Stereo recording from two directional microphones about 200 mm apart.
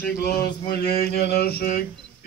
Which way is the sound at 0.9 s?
50° left (ahead or behind).